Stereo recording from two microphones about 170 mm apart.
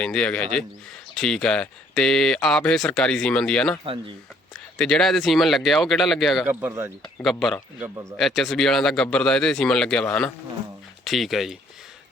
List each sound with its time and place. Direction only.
0.0 s speech: 5° left (ahead or behind)
4.8 s speech: 5° left (ahead or behind)
6.5 s speech: 15° right (ahead or behind)
7.3 s speech: centre (ahead or behind)